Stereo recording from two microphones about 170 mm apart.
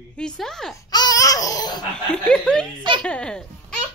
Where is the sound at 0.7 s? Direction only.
25° left (ahead or behind).